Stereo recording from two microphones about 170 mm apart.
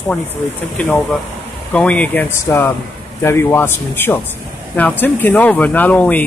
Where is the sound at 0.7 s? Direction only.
5° left (ahead or behind).